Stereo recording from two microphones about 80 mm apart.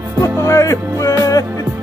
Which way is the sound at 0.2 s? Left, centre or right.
Left.